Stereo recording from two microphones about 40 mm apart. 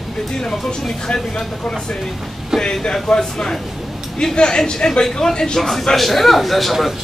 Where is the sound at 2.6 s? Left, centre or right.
Left.